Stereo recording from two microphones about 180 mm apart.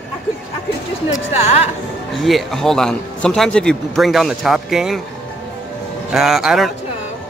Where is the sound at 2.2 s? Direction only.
Centre (ahead or behind).